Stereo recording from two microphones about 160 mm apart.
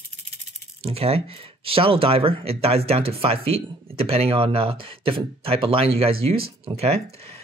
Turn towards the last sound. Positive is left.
turn(degrees=-40)  # may be behind; listen again after turning